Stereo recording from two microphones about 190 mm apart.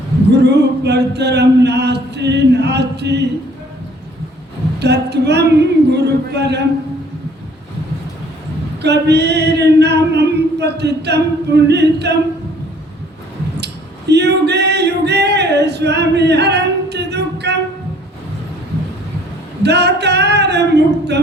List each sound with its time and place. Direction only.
0.4 s male singing: 60° right (ahead or behind)
4.8 s a sound: 60° right (ahead or behind)
8.8 s male singing: 60° right (ahead or behind)
14.1 s male singing: 60° right (ahead or behind)
19.6 s male singing: 60° right (ahead or behind)